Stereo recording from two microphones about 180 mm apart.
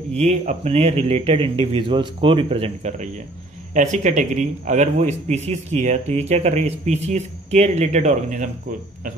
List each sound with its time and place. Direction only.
0.1 s a man's voice: 40° right (ahead or behind)